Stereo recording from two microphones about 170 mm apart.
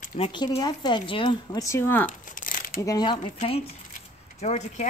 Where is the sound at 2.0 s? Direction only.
50° left (ahead or behind).